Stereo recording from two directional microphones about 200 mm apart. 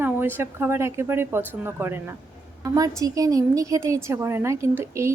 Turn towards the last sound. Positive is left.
turn(degrees=-15)  # may be behind; listen again after turning